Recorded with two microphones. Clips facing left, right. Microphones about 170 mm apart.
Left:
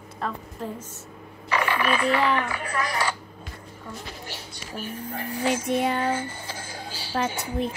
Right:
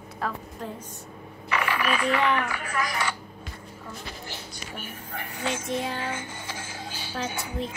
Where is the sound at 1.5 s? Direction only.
35° left (ahead or behind).